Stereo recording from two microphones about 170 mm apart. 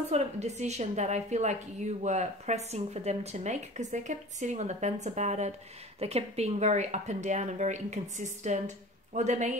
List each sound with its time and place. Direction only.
0.1 s a woman's voice: 40° right (ahead or behind)